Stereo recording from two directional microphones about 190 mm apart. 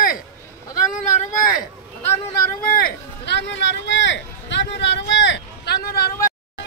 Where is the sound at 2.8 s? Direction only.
65° left (ahead or behind).